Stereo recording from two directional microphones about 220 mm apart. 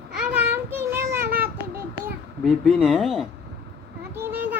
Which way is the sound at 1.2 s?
40° right (ahead or behind).